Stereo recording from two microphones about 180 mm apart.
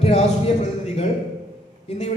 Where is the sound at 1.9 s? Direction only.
40° left (ahead or behind).